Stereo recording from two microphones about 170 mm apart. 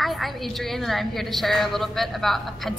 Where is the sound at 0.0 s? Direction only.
Centre (ahead or behind).